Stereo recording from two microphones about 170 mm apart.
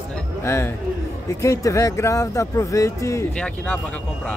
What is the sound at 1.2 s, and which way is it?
Speech, 20° left (ahead or behind).